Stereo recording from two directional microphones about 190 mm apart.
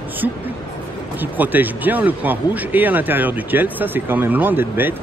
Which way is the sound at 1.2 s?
10° right (ahead or behind).